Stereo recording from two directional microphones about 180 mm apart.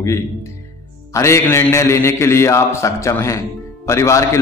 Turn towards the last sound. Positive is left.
turn(degrees=15)  # may be behind; listen again after turning